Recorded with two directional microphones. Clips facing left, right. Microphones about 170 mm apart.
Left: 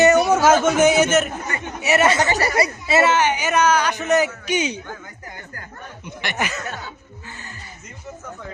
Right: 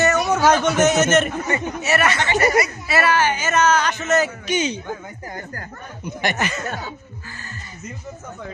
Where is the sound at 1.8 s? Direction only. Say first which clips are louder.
Left 4 dB; 20° left (ahead or behind).